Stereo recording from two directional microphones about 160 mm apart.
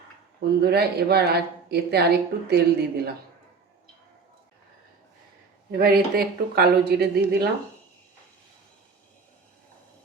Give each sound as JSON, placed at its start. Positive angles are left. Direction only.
{"t": 0.6, "sound": "speech", "side_deg": -85}
{"t": 5.7, "sound": "speech", "side_deg": -70}